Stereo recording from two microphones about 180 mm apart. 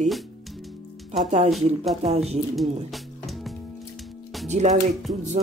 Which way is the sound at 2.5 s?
Centre (ahead or behind).